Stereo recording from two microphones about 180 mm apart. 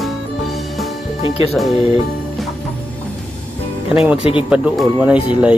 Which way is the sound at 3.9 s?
5° right (ahead or behind).